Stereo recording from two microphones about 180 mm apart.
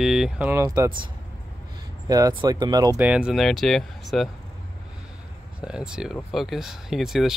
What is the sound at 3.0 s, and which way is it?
Speech, 5° right (ahead or behind).